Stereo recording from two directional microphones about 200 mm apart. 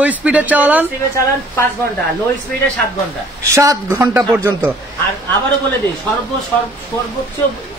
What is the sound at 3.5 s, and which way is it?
Speech, 15° right (ahead or behind).